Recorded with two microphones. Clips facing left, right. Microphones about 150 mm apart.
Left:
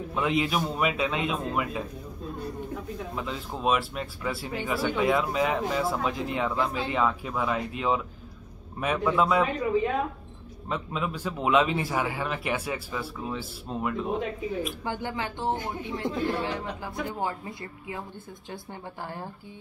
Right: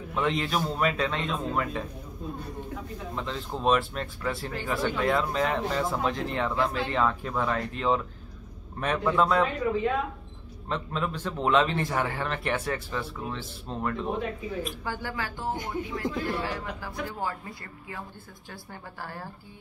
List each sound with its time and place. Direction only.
0.1 s speech: 5° left (ahead or behind)
3.2 s speech: 5° left (ahead or behind)
10.7 s speech: 5° left (ahead or behind)
14.9 s speech: 20° left (ahead or behind)
18.5 s speech: 20° left (ahead or behind)